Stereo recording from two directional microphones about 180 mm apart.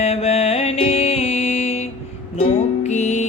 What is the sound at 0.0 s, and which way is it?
Music, 35° left (ahead or behind).